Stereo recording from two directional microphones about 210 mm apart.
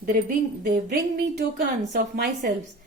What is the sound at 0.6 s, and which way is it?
A woman's voice, 45° right (ahead or behind).